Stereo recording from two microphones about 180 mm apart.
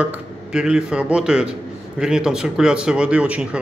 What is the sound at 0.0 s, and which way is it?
Speech, 5° right (ahead or behind).